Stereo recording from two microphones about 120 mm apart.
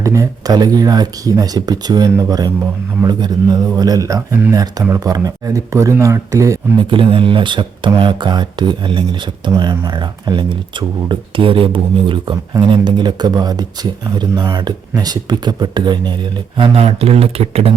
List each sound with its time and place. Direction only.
0.0 s speech: 30° right (ahead or behind)
6.9 s speech: 45° right (ahead or behind)